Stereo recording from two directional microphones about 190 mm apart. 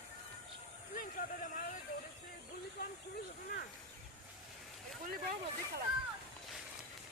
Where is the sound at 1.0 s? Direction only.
45° left (ahead or behind).